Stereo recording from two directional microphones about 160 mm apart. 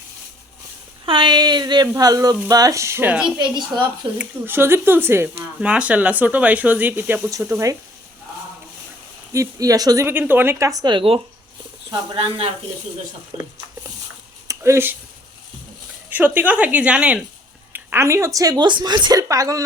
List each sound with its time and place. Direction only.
1.0 s a woman's voice: 30° right (ahead or behind)
9.3 s a woman's voice: 20° right (ahead or behind)
14.4 s a sound: 20° right (ahead or behind)
16.1 s a woman's voice: 10° right (ahead or behind)